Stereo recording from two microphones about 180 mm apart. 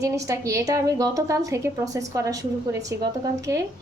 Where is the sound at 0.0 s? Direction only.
20° right (ahead or behind).